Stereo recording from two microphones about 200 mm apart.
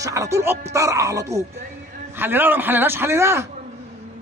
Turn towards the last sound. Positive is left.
turn(degrees=-15)  # may be behind; listen again after turning